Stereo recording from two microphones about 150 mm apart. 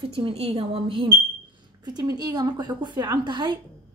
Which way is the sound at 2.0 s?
25° right (ahead or behind).